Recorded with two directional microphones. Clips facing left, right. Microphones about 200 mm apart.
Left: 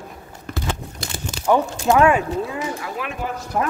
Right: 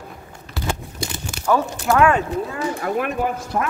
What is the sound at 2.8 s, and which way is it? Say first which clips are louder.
Speech: right 7 dB; 50° right (ahead or behind).